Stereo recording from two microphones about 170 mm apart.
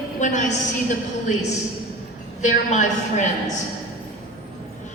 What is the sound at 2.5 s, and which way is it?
Speech, 45° left (ahead or behind).